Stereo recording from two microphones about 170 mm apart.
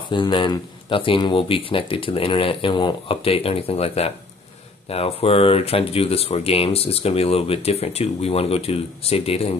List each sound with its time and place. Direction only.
0.1 s speech: 30° left (ahead or behind)